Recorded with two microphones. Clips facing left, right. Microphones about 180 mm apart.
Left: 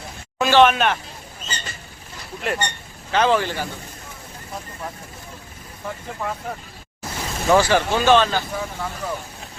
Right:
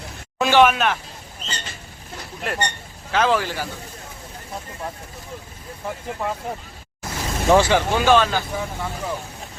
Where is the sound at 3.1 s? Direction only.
Centre (ahead or behind).